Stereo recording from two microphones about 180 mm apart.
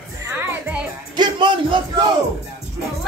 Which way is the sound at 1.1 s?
25° right (ahead or behind).